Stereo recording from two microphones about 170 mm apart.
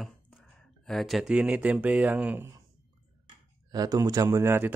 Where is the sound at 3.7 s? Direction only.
20° right (ahead or behind).